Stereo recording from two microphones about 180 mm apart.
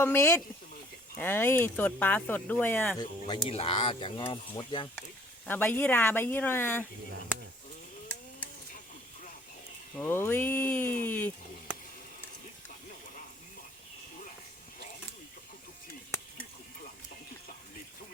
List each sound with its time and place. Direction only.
0.0 s speech: 15° left (ahead or behind)
3.0 s speech: 25° left (ahead or behind)
5.5 s speech: 10° left (ahead or behind)
9.9 s speech: 10° left (ahead or behind)